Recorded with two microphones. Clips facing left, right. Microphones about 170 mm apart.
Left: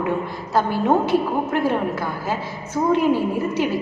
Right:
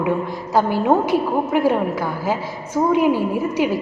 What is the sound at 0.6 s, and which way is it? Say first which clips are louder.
A woman's voice: right 2 dB; 10° right (ahead or behind).